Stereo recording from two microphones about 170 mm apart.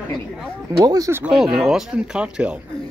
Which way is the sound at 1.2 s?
5° right (ahead or behind).